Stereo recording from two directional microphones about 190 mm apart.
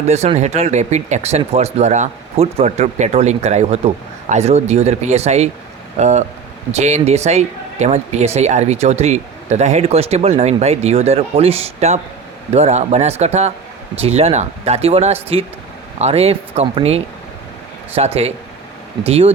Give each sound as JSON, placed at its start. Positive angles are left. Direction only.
{"t": 0.1, "sound": "speech", "side_deg": -35}